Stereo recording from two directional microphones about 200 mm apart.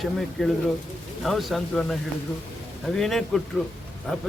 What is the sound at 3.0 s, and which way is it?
Speech, centre (ahead or behind).